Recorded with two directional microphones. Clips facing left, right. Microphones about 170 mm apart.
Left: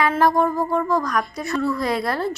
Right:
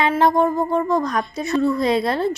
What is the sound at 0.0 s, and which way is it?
A woman's voice, 20° right (ahead or behind).